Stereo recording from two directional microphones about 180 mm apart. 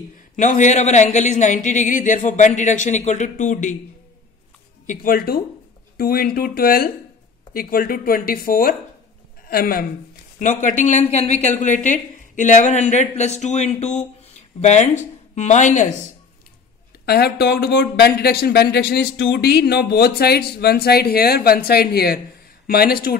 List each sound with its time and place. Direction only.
0.4 s speech: 45° left (ahead or behind)
4.8 s speech: 55° left (ahead or behind)
10.4 s speech: 45° left (ahead or behind)
17.0 s speech: 60° left (ahead or behind)